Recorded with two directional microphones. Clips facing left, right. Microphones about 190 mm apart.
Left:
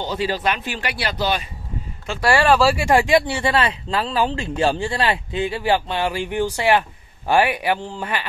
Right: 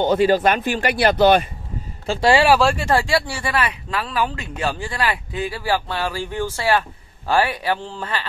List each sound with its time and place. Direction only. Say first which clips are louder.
0.0 s speech: right 7 dB; 55° right (ahead or behind)
2.0 s speech: right 3 dB; 20° right (ahead or behind)
2.4 s speech: left 3 dB; 5° right (ahead or behind)
2.7 s speech: left 3 dB; 15° left (ahead or behind)